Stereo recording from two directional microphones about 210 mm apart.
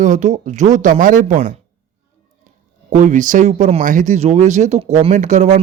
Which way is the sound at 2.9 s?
35° right (ahead or behind).